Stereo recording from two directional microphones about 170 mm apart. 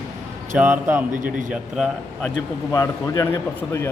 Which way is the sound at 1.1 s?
50° right (ahead or behind).